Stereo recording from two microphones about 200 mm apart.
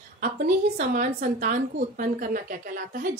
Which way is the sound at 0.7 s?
40° right (ahead or behind).